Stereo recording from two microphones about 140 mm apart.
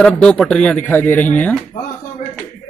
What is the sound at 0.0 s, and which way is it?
Speech, 5° left (ahead or behind).